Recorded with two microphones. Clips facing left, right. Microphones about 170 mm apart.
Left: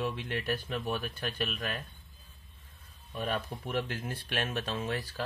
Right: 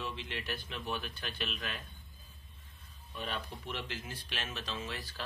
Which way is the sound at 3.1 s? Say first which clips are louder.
Left 6 dB; 50° left (ahead or behind).